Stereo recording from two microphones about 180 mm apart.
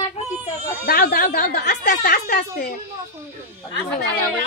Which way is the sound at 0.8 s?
55° left (ahead or behind).